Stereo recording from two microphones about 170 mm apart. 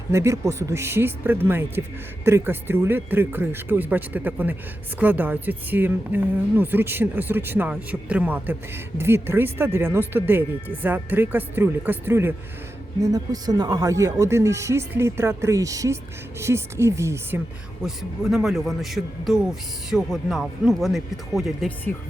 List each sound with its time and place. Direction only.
0.1 s speech: 15° right (ahead or behind)
17.8 s a man's voice: centre (ahead or behind)